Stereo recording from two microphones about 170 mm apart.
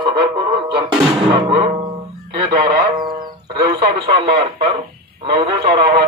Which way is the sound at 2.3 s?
25° right (ahead or behind).